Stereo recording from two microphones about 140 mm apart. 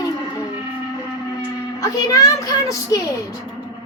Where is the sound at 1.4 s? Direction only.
25° left (ahead or behind).